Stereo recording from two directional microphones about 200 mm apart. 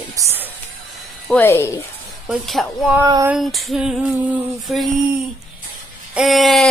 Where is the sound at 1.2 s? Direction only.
10° left (ahead or behind).